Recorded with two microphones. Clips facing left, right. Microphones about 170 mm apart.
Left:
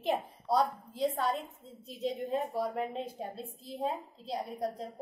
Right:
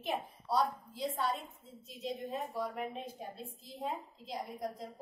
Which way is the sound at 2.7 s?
30° left (ahead or behind).